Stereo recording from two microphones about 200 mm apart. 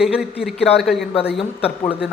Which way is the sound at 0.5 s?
30° left (ahead or behind).